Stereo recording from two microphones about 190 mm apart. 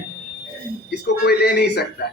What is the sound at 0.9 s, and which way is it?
Speech, 60° left (ahead or behind).